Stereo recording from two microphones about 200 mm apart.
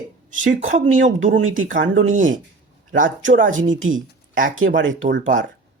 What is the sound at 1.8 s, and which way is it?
Speech, 85° right.